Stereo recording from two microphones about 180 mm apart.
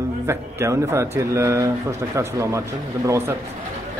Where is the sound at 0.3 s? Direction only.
15° right (ahead or behind).